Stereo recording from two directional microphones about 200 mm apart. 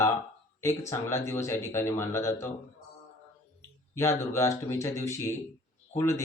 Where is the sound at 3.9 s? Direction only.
15° left (ahead or behind).